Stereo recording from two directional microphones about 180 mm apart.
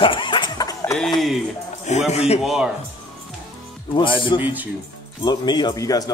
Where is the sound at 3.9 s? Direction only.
25° left (ahead or behind).